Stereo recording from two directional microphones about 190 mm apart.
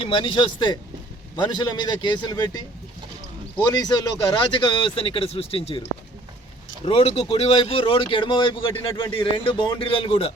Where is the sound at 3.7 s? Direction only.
20° left (ahead or behind).